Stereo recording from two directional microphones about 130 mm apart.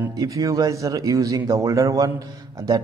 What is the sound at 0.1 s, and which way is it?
A man's voice, 25° right (ahead or behind).